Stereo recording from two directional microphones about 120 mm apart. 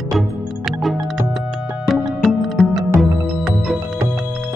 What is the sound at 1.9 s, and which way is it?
Music, centre (ahead or behind).